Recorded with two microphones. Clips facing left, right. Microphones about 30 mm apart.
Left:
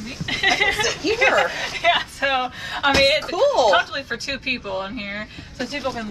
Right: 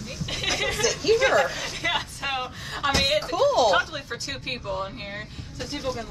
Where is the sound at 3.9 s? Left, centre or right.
Left.